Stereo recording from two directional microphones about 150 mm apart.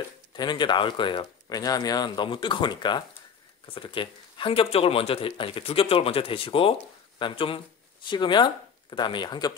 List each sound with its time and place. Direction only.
0.3 s speech: 30° left (ahead or behind)